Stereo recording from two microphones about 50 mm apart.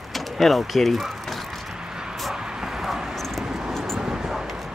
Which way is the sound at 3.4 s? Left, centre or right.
Centre.